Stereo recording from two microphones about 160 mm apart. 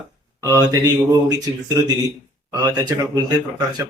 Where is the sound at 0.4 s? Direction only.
20° right (ahead or behind).